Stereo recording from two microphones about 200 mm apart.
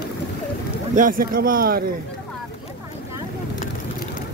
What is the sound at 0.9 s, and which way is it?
Speech, 40° right (ahead or behind).